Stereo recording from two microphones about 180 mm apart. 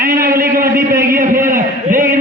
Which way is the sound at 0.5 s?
20° right (ahead or behind).